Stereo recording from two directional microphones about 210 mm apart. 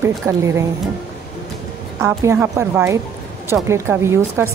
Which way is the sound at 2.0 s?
15° right (ahead or behind).